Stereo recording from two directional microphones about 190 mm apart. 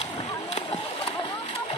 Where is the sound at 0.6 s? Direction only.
30° left (ahead or behind).